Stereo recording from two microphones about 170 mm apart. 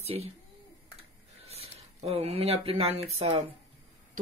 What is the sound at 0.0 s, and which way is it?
Speech, 35° right (ahead or behind).